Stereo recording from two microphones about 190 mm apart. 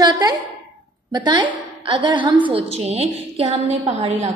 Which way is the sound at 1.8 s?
25° right (ahead or behind).